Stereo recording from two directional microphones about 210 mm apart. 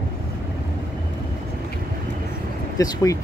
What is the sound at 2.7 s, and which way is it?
Speech, 15° left (ahead or behind).